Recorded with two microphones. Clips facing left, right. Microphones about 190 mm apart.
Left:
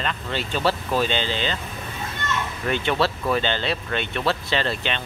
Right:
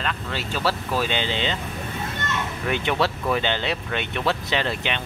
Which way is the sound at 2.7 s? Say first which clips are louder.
Left 1 dB; 15° right (ahead or behind).